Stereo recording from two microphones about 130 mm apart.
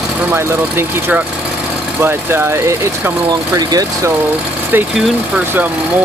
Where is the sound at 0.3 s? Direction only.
15° right (ahead or behind).